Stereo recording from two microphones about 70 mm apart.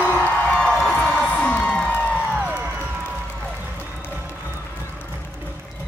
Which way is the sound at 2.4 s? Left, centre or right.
Right.